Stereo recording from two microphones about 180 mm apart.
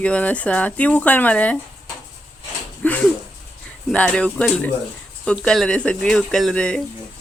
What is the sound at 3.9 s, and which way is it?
A woman's voice, 5° left (ahead or behind).